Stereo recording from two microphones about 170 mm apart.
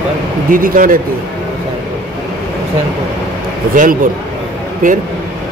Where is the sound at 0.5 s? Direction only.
55° right (ahead or behind).